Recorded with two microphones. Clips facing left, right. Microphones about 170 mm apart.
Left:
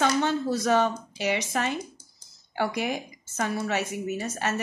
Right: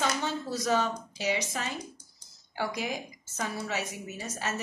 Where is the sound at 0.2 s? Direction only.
60° left (ahead or behind).